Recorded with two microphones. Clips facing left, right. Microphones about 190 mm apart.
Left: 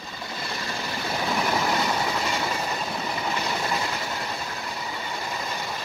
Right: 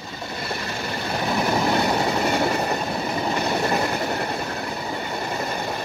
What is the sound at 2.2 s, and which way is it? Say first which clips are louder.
Train: right 6 dB; 60° right (ahead or behind).